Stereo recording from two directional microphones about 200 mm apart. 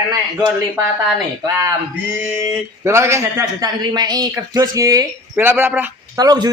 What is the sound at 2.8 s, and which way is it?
Speech, 15° right (ahead or behind).